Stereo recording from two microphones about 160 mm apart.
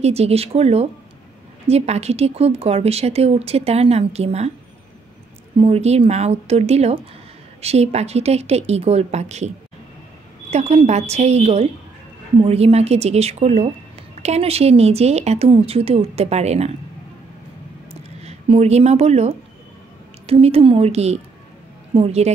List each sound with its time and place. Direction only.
0.0 s speech: 40° right (ahead or behind)
5.6 s speech: 40° right (ahead or behind)
10.5 s a woman's voice: 40° right (ahead or behind)
18.2 s a woman's voice: 40° right (ahead or behind)